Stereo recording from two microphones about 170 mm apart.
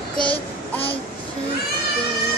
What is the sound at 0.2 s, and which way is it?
Child singing, 30° left (ahead or behind).